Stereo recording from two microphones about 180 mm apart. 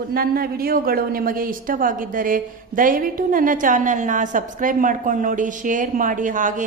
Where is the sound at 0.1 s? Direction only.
55° right (ahead or behind).